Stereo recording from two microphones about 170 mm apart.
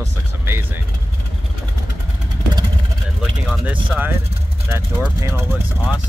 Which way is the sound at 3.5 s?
10° right (ahead or behind).